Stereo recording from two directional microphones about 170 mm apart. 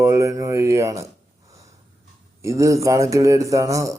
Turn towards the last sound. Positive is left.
turn(degrees=-20)  # may be behind; listen again after turning